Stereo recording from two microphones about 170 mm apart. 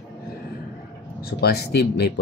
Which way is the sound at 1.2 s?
70° left (ahead or behind).